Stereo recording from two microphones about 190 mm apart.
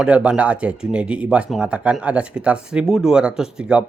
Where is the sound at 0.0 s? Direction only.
5° right (ahead or behind).